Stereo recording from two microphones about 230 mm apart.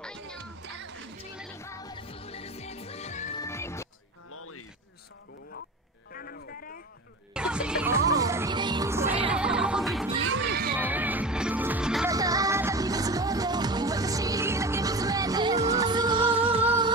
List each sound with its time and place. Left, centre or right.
0.0 s music: centre
0.4 s music: right
1.6 s music: centre; by 3.3 s left
3.3 s music: centre
4.3 s a sound: left
6.1 s music: left
7.3 s music: centre
10.2 s music: right
10.8 s music: centre
12.1 s music: centre